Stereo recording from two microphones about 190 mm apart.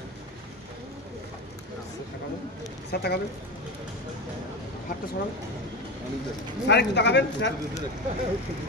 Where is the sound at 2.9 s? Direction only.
55° left (ahead or behind).